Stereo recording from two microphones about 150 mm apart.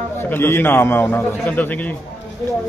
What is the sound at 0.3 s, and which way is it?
Speech, 15° left (ahead or behind).